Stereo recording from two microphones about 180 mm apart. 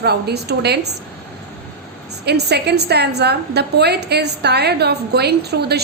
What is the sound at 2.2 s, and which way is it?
A woman's voice, 65° right (ahead or behind).